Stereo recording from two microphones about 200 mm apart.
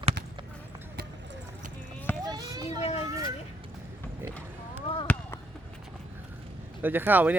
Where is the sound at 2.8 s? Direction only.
30° left (ahead or behind).